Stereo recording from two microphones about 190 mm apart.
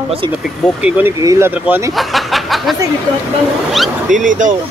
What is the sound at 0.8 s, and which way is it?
Speech, 10° right (ahead or behind).